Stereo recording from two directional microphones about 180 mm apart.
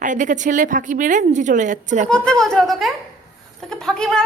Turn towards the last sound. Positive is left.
turn(degrees=5)  # may be behind; listen again after turning